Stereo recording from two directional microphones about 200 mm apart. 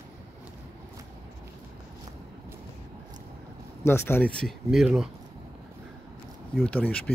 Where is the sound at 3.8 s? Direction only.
10° left (ahead or behind).